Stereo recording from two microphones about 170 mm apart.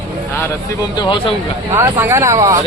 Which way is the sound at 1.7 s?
15° right (ahead or behind).